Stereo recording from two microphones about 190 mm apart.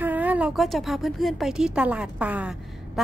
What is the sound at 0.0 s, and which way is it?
Speech, 10° right (ahead or behind).